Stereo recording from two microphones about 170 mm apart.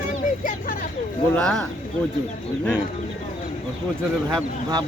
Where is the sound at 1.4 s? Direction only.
5° left (ahead or behind).